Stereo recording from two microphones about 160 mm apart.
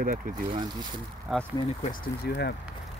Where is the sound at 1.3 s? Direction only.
5° right (ahead or behind).